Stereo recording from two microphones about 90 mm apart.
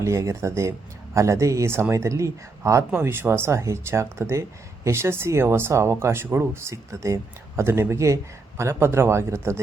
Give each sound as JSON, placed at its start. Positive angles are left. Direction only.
{"t": 0.0, "sound": "speech", "side_deg": -35}
{"t": 2.9, "sound": "speech", "side_deg": -25}